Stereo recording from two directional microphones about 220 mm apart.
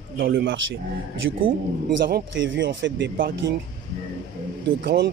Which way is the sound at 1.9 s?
50° right (ahead or behind).